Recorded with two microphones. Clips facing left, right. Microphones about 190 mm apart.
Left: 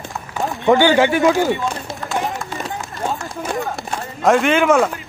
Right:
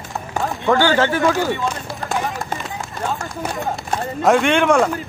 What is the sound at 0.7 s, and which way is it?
Speech, 15° left (ahead or behind).